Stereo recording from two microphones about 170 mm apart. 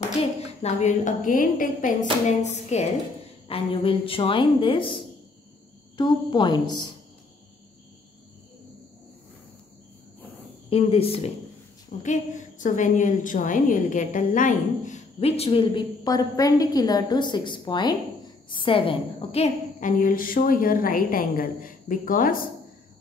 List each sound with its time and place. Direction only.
0.2 s a woman's voice: 40° left (ahead or behind)
5.9 s a woman's voice: 25° left (ahead or behind)
10.7 s a woman's voice: 35° left (ahead or behind)
12.0 s a woman's voice: 45° left (ahead or behind)